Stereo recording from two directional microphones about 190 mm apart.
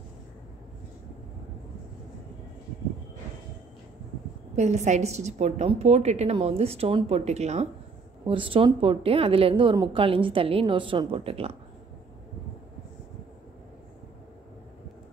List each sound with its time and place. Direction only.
4.6 s a woman's voice: 40° right (ahead or behind)